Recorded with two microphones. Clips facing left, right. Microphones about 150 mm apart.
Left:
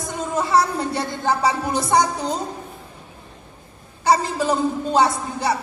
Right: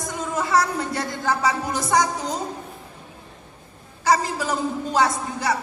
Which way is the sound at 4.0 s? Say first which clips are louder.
Left 2 dB; 30° left (ahead or behind).